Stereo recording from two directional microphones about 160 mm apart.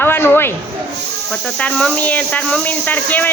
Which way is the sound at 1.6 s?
5° left (ahead or behind).